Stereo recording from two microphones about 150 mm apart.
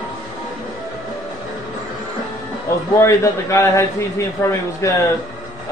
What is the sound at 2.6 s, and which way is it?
A man's voice, 20° left (ahead or behind).